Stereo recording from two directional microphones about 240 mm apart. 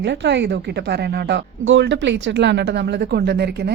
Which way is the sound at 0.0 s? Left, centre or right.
Right.